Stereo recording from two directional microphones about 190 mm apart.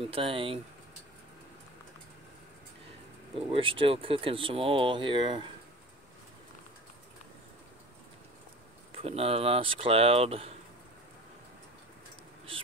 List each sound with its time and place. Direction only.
0.0 s speech: 30° right (ahead or behind)
3.3 s speech: 30° right (ahead or behind)
9.0 s speech: 30° right (ahead or behind)